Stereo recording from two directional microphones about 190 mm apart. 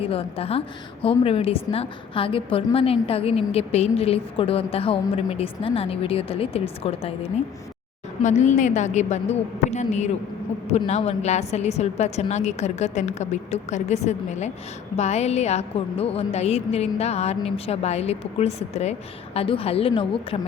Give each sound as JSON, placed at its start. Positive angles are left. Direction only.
{"t": 0.0, "sound": "a woman's voice", "side_deg": 30}